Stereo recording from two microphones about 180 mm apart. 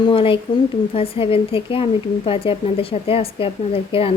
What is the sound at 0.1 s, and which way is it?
A woman's voice, 30° left (ahead or behind).